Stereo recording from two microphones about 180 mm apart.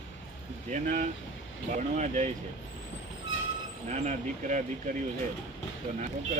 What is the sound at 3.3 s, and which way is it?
Train, 90° left.